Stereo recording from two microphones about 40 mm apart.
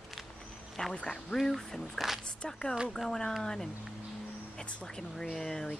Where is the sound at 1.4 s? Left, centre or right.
Centre.